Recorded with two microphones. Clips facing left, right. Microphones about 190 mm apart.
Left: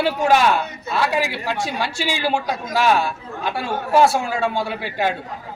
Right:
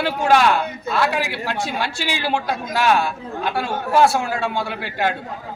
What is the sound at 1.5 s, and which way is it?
Speech, 40° left (ahead or behind).